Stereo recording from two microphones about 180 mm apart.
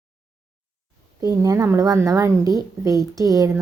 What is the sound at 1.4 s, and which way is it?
A woman's voice, 15° right (ahead or behind).